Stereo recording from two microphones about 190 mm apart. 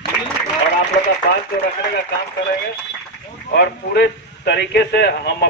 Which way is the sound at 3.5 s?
60° left (ahead or behind).